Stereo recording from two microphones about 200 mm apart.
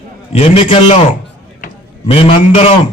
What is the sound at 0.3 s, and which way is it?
Music, 30° left (ahead or behind).